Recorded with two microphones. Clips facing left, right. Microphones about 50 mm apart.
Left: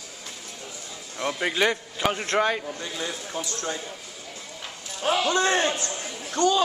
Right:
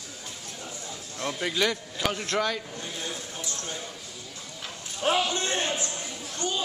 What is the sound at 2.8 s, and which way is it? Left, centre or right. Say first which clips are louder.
Speech: left 3 dB; left.